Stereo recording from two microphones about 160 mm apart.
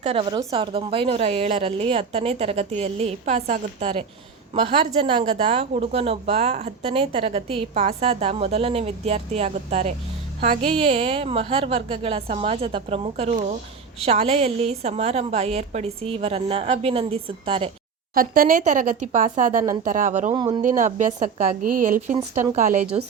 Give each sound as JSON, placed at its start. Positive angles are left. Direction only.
{"t": 0.0, "sound": "a woman's voice", "side_deg": -40}
{"t": 18.1, "sound": "a woman's voice", "side_deg": -65}
{"t": 20.3, "sound": "speech", "side_deg": -25}
{"t": 20.6, "sound": "a woman's voice", "side_deg": -55}